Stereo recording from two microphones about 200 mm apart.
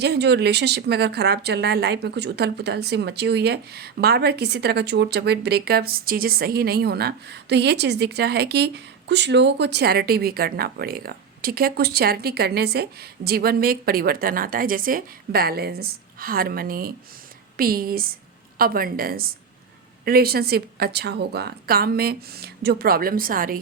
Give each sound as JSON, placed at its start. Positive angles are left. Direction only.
{"t": 0.0, "sound": "a woman's voice", "side_deg": -55}